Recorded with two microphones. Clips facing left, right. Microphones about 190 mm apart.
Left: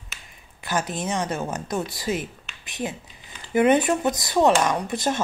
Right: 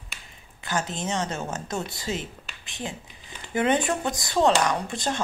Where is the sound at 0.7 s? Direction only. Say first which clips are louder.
Left 2 dB; 15° left (ahead or behind).